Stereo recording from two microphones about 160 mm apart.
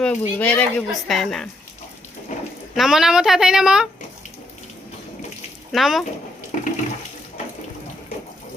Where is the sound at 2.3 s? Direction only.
50° left (ahead or behind).